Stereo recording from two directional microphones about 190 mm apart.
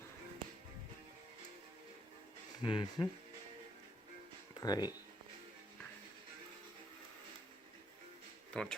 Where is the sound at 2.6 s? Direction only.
25° left (ahead or behind).